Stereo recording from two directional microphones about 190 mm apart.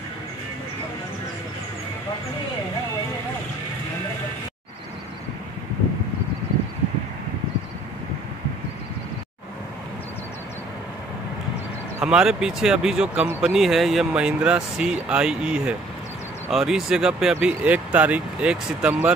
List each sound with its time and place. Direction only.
12.0 s speech: 5° right (ahead or behind)